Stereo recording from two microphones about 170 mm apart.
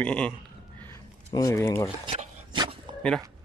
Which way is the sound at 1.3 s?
20° left (ahead or behind).